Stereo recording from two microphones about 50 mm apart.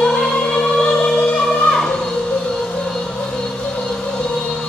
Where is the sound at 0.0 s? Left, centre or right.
Centre.